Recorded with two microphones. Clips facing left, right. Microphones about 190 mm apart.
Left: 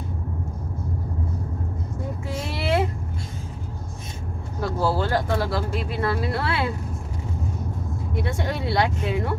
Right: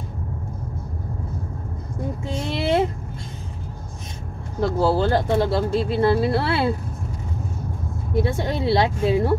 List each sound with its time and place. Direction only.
2.2 s a sound: 25° right (ahead or behind)
4.6 s speech: 25° right (ahead or behind)
8.1 s speech: 25° right (ahead or behind)